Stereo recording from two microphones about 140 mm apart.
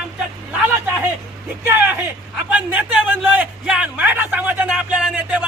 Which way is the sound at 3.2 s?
10° right (ahead or behind).